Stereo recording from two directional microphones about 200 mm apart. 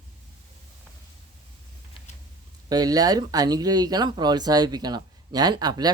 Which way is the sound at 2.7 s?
20° right (ahead or behind).